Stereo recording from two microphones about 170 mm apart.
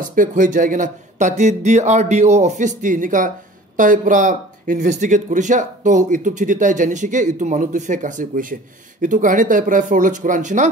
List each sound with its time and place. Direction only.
0.1 s speech: 50° right (ahead or behind)